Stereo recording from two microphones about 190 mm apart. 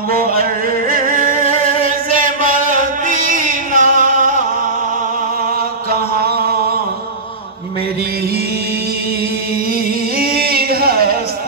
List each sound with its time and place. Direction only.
0.4 s a sound: 45° right (ahead or behind)
2.0 s music: 45° right (ahead or behind)
5.9 s chant: 50° right (ahead or behind)
10.1 s singing: 55° right (ahead or behind)